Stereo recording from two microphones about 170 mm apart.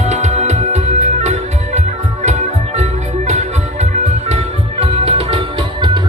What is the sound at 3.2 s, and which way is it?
Music, 40° right (ahead or behind).